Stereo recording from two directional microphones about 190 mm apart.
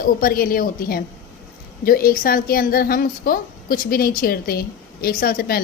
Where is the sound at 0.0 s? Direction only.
50° left (ahead or behind).